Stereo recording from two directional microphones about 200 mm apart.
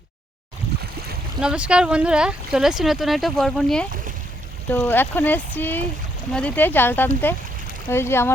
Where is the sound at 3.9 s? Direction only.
40° right (ahead or behind).